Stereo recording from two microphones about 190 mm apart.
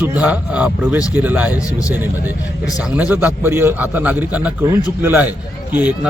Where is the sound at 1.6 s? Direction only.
15° left (ahead or behind).